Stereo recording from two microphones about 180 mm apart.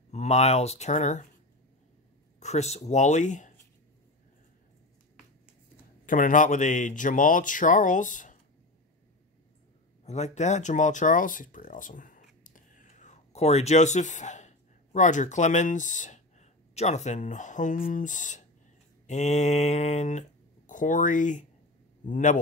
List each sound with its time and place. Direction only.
0.1 s speech: 40° left (ahead or behind)
2.4 s speech: 40° left (ahead or behind)
6.0 s speech: 50° left (ahead or behind)
10.0 s speech: 40° left (ahead or behind)